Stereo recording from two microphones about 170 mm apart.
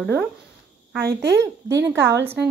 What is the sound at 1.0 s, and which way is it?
Speech, 80° right.